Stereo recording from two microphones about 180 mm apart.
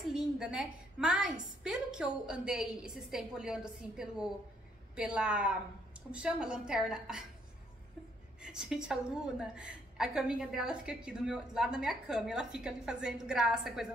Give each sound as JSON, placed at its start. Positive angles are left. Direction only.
{"t": 0.1, "sound": "a woman's voice", "side_deg": -5}
{"t": 8.4, "sound": "a woman's voice", "side_deg": -5}